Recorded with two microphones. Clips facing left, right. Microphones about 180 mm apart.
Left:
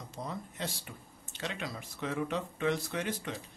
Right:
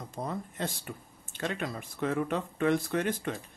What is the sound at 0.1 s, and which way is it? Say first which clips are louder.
Speech: right 4 dB; 50° right (ahead or behind).